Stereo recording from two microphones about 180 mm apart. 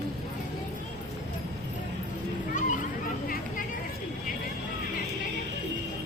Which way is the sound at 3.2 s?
55° left (ahead or behind).